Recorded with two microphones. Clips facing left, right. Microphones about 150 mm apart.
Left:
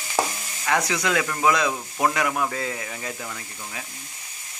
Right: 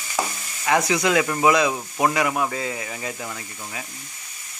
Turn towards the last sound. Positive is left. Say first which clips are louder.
# right 2 dB
turn(degrees=-5)  # may be behind; listen again after turning